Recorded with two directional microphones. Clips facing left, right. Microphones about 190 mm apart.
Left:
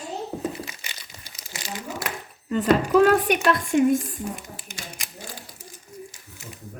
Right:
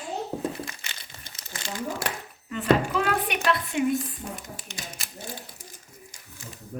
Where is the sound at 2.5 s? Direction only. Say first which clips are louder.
Left 3 dB; 40° left (ahead or behind).